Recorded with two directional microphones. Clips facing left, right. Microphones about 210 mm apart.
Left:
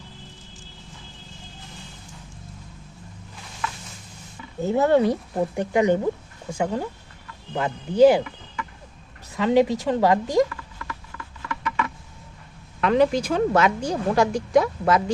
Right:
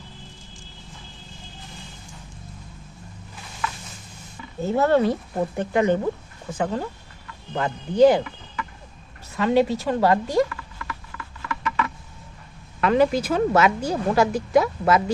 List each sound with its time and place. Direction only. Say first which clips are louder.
4.6 s a woman's voice: left 1 dB; 15° left (ahead or behind)
12.8 s a woman's voice: even; centre (ahead or behind)